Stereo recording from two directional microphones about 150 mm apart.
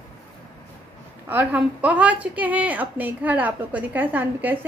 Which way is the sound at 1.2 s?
10° right (ahead or behind).